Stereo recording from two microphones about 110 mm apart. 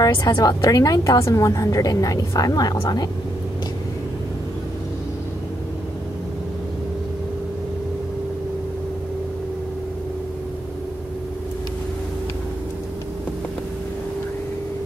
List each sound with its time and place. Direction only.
0.0 s a woman's voice: 35° left (ahead or behind)